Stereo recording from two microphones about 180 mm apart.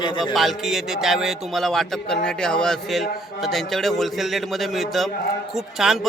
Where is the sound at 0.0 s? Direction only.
25° left (ahead or behind).